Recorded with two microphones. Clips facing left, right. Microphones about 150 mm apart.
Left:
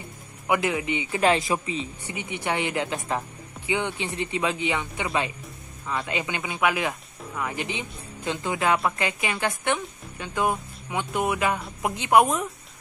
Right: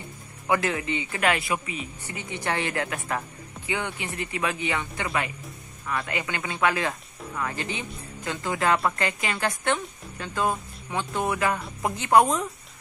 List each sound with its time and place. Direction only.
0.5 s speech: 15° left (ahead or behind)
1.2 s speech: 30° left (ahead or behind)
2.0 s speech: 15° left (ahead or behind)
12.3 s speech: 5° left (ahead or behind)